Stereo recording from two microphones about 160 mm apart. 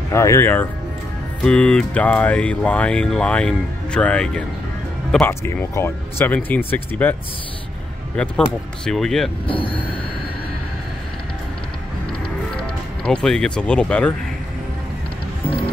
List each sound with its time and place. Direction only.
0.1 s speech: 20° left (ahead or behind)
8.2 s speech: 5° left (ahead or behind)
9.5 s speech: 35° left (ahead or behind)
12.5 s speech: 5° left (ahead or behind)